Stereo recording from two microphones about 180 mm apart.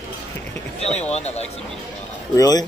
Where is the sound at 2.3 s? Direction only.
20° left (ahead or behind).